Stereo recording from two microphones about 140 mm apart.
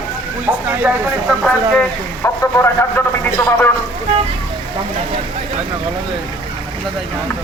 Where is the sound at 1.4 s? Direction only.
5° left (ahead or behind).